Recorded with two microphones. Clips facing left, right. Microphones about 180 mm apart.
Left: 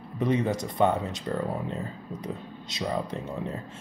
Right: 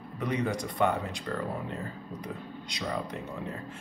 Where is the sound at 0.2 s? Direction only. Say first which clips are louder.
Left 5 dB; 25° left (ahead or behind).